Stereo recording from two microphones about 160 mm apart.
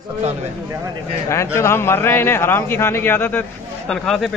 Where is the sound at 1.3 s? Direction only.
15° left (ahead or behind).